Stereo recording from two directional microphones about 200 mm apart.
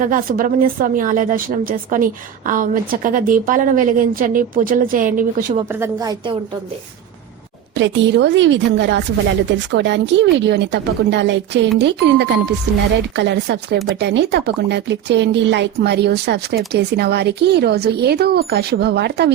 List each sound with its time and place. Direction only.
0.0 s speech: 45° right (ahead or behind)
5.6 s a woman's voice: 15° right (ahead or behind)
7.8 s speech: 65° right (ahead or behind)